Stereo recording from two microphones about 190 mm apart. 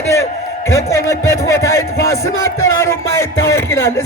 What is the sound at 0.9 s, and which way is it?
A man's voice, 15° left (ahead or behind).